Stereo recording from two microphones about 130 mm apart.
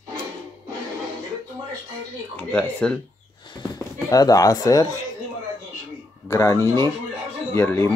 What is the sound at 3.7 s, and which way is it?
Speech, 30° left (ahead or behind).